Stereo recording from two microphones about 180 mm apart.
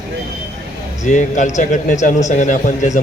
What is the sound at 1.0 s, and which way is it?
A man's voice, 45° left (ahead or behind).